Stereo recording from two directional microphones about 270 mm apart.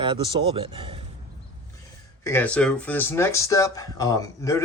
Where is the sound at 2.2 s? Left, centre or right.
Centre.